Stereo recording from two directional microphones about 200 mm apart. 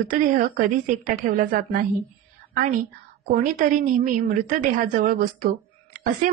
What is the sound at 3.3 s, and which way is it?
A woman's voice, 40° right (ahead or behind).